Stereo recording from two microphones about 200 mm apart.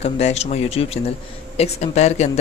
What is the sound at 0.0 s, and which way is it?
Speech, 30° left (ahead or behind).